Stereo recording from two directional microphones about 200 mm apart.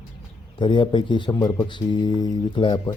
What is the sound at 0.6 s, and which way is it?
A man's voice, 25° left (ahead or behind).